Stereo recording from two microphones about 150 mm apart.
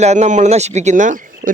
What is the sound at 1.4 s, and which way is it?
Frog, 65° right (ahead or behind).